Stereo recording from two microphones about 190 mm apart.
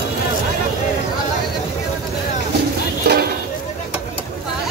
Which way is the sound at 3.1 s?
60° right (ahead or behind).